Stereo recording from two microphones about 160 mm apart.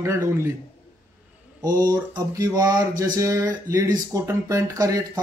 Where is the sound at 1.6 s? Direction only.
25° right (ahead or behind).